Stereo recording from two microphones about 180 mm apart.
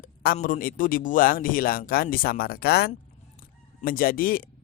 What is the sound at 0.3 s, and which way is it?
Speech, 45° left (ahead or behind).